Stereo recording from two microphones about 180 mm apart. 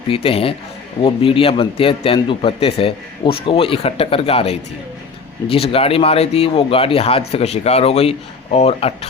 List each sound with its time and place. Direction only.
0.1 s speech: 30° left (ahead or behind)